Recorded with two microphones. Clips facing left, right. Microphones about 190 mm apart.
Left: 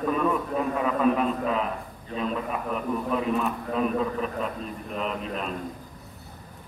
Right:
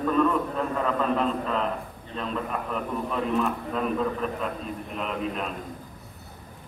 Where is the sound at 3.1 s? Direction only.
Centre (ahead or behind).